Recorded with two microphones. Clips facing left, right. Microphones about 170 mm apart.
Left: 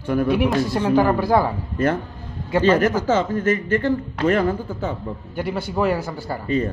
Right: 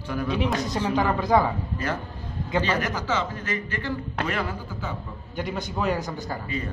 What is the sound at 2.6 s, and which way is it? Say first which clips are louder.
A man's voice: left 14 dB; 45° left (ahead or behind).